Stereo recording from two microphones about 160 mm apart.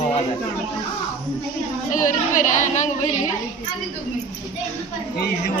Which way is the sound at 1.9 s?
55° left (ahead or behind).